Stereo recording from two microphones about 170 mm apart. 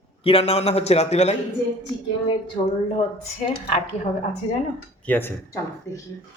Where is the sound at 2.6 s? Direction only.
30° left (ahead or behind).